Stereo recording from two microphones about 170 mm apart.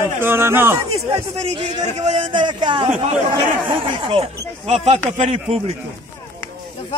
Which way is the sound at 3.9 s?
30° right (ahead or behind).